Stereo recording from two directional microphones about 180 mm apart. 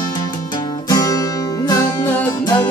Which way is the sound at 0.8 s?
20° left (ahead or behind).